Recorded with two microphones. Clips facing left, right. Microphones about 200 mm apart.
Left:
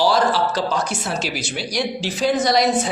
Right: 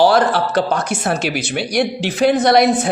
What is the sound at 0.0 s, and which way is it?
A woman's voice, 60° right (ahead or behind).